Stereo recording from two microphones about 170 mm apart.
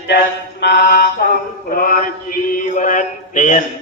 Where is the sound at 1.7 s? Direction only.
55° left (ahead or behind).